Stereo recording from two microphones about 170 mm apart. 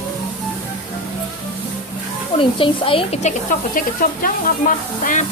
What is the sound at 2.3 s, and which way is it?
Speech, 30° left (ahead or behind).